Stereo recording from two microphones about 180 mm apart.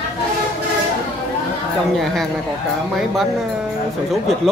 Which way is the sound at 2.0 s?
Centre (ahead or behind).